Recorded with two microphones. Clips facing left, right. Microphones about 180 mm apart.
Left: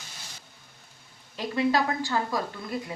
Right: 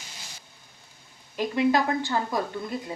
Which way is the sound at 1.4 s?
20° right (ahead or behind).